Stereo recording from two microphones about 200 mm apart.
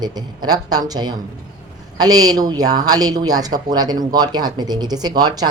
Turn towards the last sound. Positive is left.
turn(degrees=-20)  # may be behind; listen again after turning